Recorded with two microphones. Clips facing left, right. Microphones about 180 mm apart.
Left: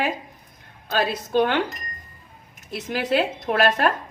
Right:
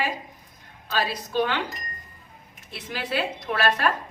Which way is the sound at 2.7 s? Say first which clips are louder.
Left 7 dB; 50° left (ahead or behind).